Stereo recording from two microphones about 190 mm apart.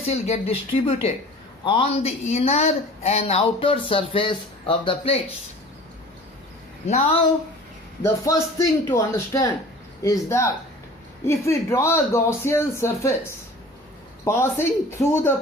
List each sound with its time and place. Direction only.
0.0 s speech: 35° left (ahead or behind)
6.8 s speech: 35° left (ahead or behind)
8.0 s speech: 15° left (ahead or behind)
14.3 s speech: 15° left (ahead or behind)